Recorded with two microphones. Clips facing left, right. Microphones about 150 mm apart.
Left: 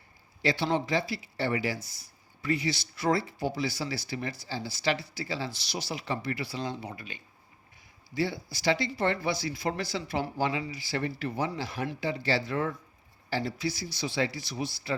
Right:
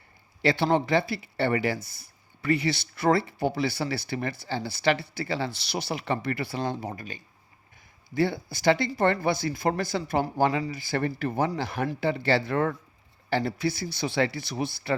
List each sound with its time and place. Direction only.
0.4 s speech: 55° right (ahead or behind)